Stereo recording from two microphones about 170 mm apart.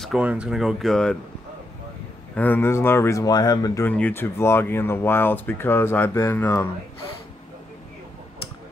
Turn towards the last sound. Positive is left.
turn(degrees=15)  # may be behind; listen again after turning